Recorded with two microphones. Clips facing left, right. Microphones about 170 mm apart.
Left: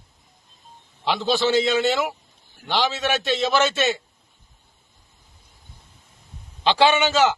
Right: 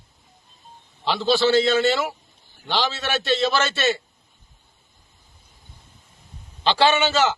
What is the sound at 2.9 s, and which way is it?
Speech, 15° left (ahead or behind).